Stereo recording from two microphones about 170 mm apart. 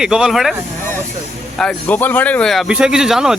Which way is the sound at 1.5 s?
5° left (ahead or behind).